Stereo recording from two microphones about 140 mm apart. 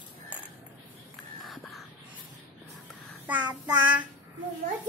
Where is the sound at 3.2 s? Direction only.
10° right (ahead or behind).